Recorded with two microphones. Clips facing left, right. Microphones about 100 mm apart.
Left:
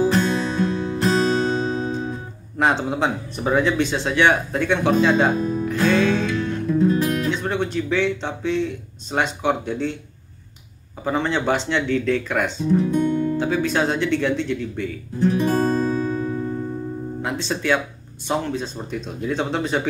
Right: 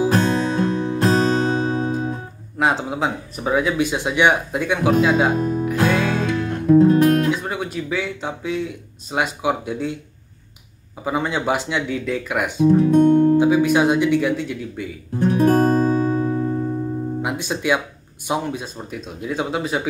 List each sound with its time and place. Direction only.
0.1 s music: 40° right (ahead or behind)
2.6 s speech: 5° right (ahead or behind)
5.7 s music: 10° right (ahead or behind)
6.5 s music: 50° right (ahead or behind)
7.2 s speech: 5° right (ahead or behind)
11.1 s speech: 10° right (ahead or behind)
12.6 s guitar: 55° right (ahead or behind)
13.4 s speech: 15° right (ahead or behind)
15.1 s guitar: 50° right (ahead or behind)
17.2 s speech: 15° right (ahead or behind)